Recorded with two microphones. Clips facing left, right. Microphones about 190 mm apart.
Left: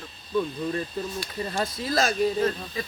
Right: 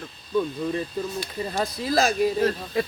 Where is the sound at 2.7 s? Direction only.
65° right (ahead or behind).